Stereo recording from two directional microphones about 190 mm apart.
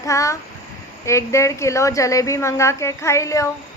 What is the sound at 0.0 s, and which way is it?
A woman's voice, 15° left (ahead or behind).